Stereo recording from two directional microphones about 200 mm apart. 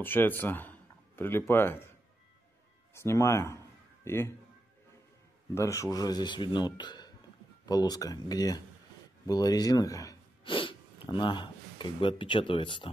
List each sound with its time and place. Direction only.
0.0 s a man's voice: 10° left (ahead or behind)
2.9 s speech: 15° left (ahead or behind)
5.5 s speech: 15° left (ahead or behind)